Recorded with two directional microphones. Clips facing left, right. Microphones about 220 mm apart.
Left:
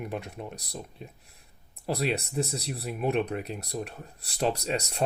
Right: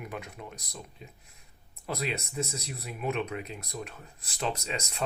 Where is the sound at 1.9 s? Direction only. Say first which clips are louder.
Left 5 dB; 35° left (ahead or behind).